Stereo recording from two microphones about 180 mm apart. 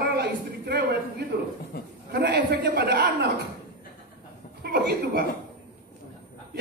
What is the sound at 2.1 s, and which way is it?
A man's voice, 65° right (ahead or behind).